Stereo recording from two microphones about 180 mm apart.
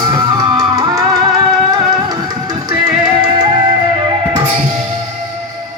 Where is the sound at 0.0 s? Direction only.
20° right (ahead or behind).